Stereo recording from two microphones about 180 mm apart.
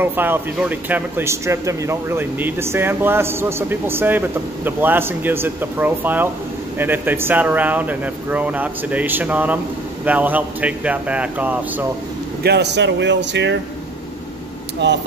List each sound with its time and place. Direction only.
0.0 s a man's voice: 10° right (ahead or behind)
12.4 s speech: 70° right (ahead or behind)
14.8 s speech: 75° right (ahead or behind)